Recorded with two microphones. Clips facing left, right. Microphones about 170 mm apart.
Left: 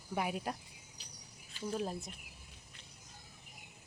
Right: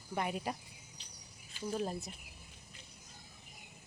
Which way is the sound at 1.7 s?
Centre (ahead or behind).